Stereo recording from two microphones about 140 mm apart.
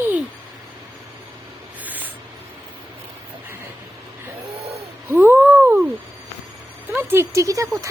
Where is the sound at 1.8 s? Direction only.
10° right (ahead or behind).